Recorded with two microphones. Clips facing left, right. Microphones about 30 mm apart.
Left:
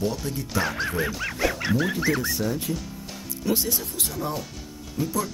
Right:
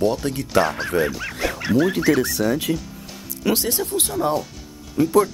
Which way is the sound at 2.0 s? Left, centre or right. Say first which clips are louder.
Right 6 dB; right.